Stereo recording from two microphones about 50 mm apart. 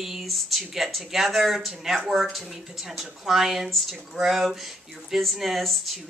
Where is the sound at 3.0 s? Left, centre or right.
Centre.